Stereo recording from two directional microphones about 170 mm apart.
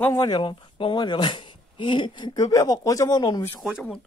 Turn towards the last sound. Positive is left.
turn(degrees=5)  # may be behind; listen again after turning